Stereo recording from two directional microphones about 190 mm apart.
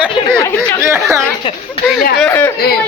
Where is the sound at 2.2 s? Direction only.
10° left (ahead or behind).